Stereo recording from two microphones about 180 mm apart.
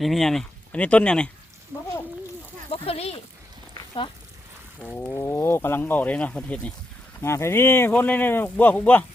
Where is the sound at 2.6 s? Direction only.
30° left (ahead or behind).